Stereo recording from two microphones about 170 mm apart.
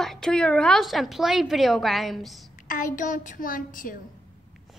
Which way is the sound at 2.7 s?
50° left (ahead or behind).